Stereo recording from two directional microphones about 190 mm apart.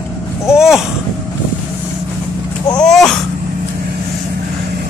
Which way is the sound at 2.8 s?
Centre (ahead or behind).